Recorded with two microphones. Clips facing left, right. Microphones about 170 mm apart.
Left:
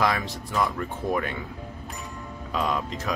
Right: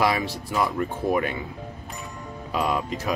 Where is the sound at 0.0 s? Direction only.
10° right (ahead or behind).